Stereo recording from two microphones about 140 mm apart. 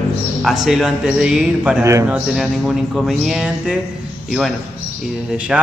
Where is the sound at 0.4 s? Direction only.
Centre (ahead or behind).